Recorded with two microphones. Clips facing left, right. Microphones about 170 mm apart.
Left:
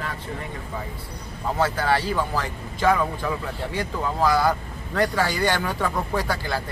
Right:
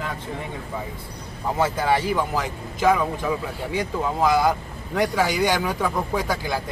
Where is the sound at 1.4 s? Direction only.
10° right (ahead or behind).